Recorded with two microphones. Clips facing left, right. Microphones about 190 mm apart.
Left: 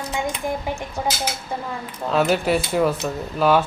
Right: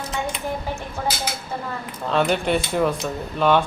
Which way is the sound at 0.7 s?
15° left (ahead or behind).